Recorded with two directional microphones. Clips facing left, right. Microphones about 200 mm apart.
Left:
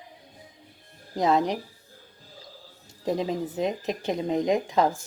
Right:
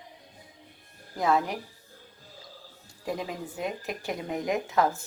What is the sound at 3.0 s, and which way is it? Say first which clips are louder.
Speech: left 6 dB; 25° left (ahead or behind).